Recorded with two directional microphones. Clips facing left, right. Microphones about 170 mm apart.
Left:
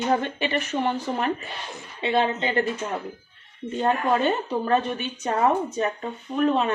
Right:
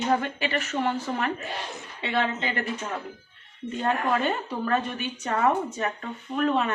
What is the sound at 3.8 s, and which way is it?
A woman's voice, 25° left (ahead or behind).